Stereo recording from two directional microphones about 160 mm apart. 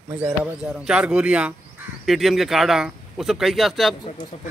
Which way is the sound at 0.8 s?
5° right (ahead or behind).